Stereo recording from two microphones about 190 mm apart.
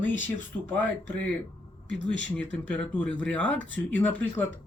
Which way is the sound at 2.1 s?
70° left (ahead or behind).